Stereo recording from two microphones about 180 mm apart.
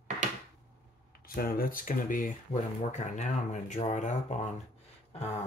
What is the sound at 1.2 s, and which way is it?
Speech, 55° left (ahead or behind).